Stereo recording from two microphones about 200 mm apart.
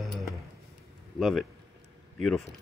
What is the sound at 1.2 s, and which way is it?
Speech, centre (ahead or behind).